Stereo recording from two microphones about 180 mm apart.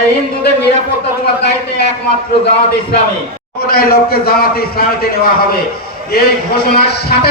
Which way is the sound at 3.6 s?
55° left (ahead or behind).